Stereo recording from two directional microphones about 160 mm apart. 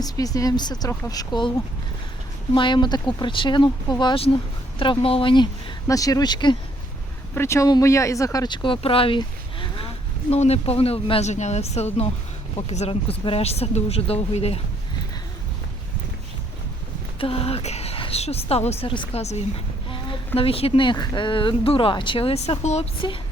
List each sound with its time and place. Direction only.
0.0 s speech: 20° left (ahead or behind)
2.6 s speech: 30° left (ahead or behind)
7.3 s speech: 15° left (ahead or behind); by 14.6 s 40° left (ahead or behind)
17.2 s speech: 35° left (ahead or behind)